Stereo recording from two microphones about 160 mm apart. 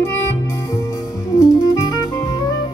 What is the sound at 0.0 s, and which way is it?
Music, 15° left (ahead or behind).